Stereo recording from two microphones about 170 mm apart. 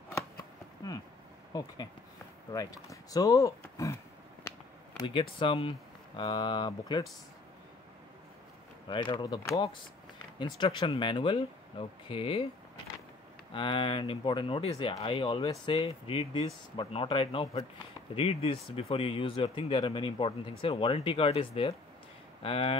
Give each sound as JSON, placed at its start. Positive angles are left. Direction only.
{"t": 1.5, "sound": "speech", "side_deg": 20}
{"t": 5.0, "sound": "speech", "side_deg": 30}
{"t": 8.8, "sound": "speech", "side_deg": 25}
{"t": 13.5, "sound": "speech", "side_deg": 30}